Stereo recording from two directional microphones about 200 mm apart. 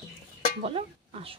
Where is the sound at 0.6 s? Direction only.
30° right (ahead or behind).